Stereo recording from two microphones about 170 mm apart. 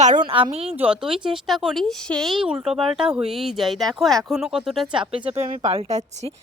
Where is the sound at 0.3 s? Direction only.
30° right (ahead or behind).